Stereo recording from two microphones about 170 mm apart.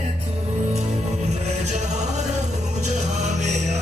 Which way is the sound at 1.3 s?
40° right (ahead or behind).